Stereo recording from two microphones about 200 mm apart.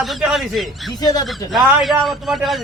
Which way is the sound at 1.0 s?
20° left (ahead or behind).